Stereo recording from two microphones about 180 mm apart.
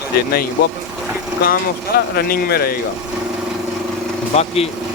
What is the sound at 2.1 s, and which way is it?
Speech, 60° left (ahead or behind).